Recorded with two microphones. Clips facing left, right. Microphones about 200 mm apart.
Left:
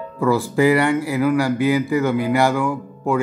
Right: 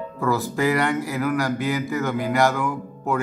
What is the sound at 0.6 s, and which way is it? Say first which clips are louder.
A man's voice: left 6 dB; 10° left (ahead or behind).